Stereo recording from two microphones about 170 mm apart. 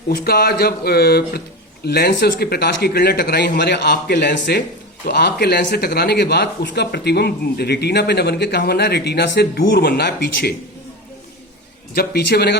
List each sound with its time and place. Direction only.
0.1 s speech: 65° left (ahead or behind); by 4.6 s 85° left
5.0 s speech: 70° left (ahead or behind)
11.9 s speech: 70° left (ahead or behind)